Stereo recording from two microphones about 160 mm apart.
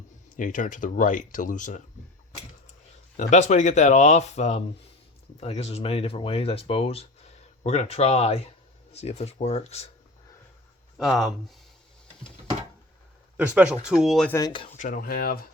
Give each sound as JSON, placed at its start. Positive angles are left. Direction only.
{"t": 0.3, "sound": "speech", "side_deg": 55}
{"t": 3.2, "sound": "speech", "side_deg": 45}
{"t": 10.9, "sound": "speech", "side_deg": 0}
{"t": 13.3, "sound": "speech", "side_deg": -10}
{"t": 14.3, "sound": "speech", "side_deg": 20}
{"t": 14.8, "sound": "speech", "side_deg": 60}